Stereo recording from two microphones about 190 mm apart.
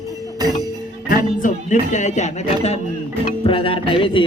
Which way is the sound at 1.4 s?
40° left (ahead or behind).